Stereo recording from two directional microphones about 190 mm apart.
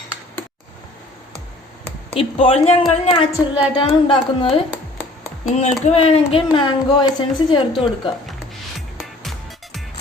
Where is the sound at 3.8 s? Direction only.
30° left (ahead or behind).